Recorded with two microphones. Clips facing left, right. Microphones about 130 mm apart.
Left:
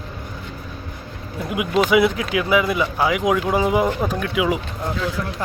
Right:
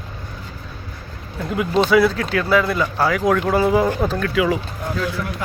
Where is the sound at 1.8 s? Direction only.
15° left (ahead or behind).